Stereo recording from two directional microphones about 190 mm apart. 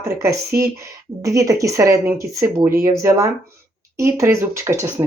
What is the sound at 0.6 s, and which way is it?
Speech, 15° right (ahead or behind).